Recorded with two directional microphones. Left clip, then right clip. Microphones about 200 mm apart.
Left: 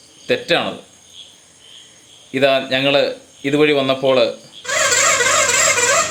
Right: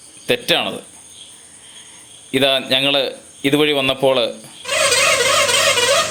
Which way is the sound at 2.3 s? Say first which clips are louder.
Even; 20° right (ahead or behind).